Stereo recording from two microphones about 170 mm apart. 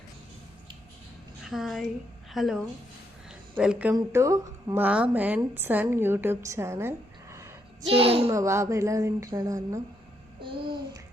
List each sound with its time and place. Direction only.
1.5 s a woman's voice: centre (ahead or behind)
3.9 s a woman's voice: 20° right (ahead or behind)
7.9 s speech: 35° right (ahead or behind)
8.3 s speech: 15° right (ahead or behind)